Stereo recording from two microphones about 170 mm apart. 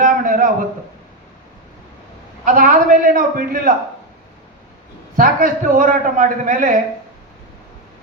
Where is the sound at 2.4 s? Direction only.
50° right (ahead or behind).